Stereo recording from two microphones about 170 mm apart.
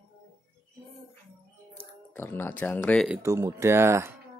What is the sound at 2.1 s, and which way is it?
Speech, 15° left (ahead or behind).